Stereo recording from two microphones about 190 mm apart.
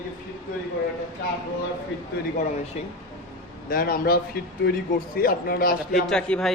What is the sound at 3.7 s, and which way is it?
A man's voice, 50° left (ahead or behind).